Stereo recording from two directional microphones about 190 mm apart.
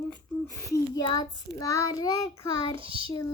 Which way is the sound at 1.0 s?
20° left (ahead or behind).